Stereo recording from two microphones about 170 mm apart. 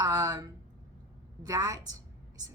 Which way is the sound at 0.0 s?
20° right (ahead or behind).